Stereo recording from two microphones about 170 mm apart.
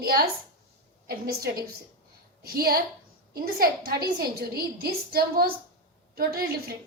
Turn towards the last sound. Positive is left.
turn(degrees=-65)  # may be behind; listen again after turning